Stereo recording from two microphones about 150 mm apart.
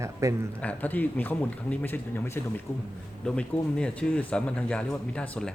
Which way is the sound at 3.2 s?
5° left (ahead or behind).